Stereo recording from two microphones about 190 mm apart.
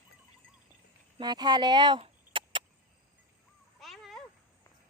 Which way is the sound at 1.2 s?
20° right (ahead or behind).